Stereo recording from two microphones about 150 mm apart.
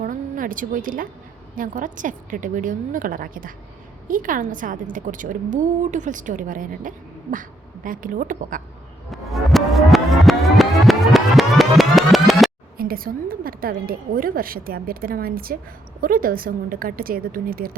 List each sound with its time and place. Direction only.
0.0 s a sound: 65° right (ahead or behind)
1.5 s a woman's voice: 60° right (ahead or behind)
9.0 s music: centre (ahead or behind)
12.7 s a woman's voice: 80° right